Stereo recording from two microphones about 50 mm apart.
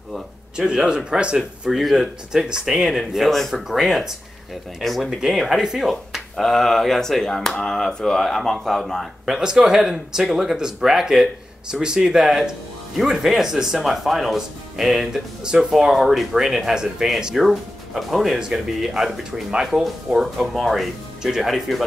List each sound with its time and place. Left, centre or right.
0.6 s speech: centre
1.7 s speech: centre
3.3 s speech: centre
9.2 s speech: centre
17.4 s speech: centre